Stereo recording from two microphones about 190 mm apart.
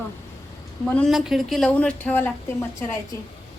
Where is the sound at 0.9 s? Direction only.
5° left (ahead or behind).